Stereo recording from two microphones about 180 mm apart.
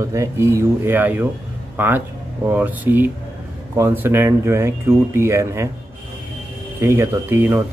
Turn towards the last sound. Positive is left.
turn(degrees=-10)  # may be behind; listen again after turning